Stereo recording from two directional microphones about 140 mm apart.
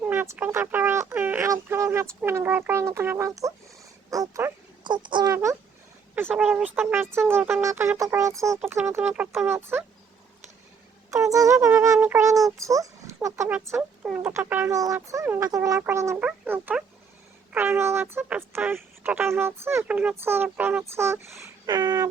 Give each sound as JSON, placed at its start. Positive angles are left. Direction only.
{"t": 0.0, "sound": "speech", "side_deg": -15}
{"t": 4.8, "sound": "speech", "side_deg": -35}
{"t": 5.3, "sound": "speech", "side_deg": -20}
{"t": 6.3, "sound": "speech", "side_deg": -5}
{"t": 8.9, "sound": "speech", "side_deg": -10}
{"t": 11.1, "sound": "speech", "side_deg": -25}
{"t": 14.0, "sound": "speech", "side_deg": -10}